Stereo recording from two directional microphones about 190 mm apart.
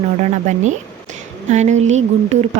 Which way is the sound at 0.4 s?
40° right (ahead or behind).